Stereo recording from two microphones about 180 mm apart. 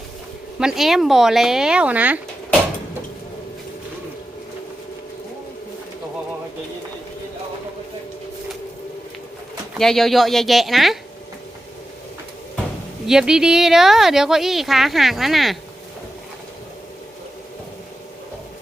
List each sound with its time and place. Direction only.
0.6 s speech: centre (ahead or behind)
9.7 s speech: centre (ahead or behind)
13.1 s speech: 5° right (ahead or behind)